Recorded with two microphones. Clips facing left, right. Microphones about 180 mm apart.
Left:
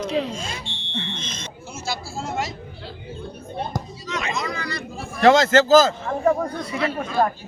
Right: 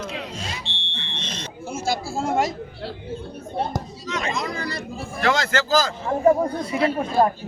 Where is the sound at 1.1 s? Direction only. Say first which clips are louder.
Right 1 dB; 35° right (ahead or behind).